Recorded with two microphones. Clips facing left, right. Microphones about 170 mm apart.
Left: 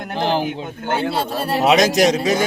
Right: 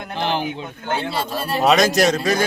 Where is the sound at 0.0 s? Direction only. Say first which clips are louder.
Left 3 dB; 40° left (ahead or behind).